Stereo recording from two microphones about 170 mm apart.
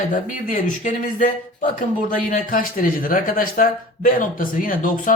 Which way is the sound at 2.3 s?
50° left (ahead or behind).